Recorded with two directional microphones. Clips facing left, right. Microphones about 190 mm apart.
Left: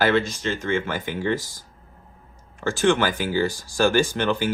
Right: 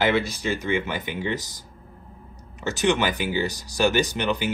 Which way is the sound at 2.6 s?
20° right (ahead or behind).